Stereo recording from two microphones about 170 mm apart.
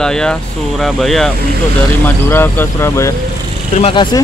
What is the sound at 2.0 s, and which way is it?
Speech, 10° left (ahead or behind).